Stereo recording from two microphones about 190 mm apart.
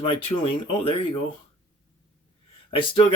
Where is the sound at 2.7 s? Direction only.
25° left (ahead or behind).